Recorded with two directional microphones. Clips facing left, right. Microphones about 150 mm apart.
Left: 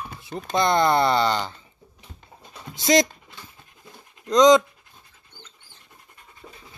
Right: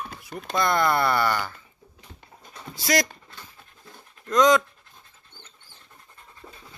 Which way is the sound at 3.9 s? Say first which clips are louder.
Left 4 dB; 20° left (ahead or behind).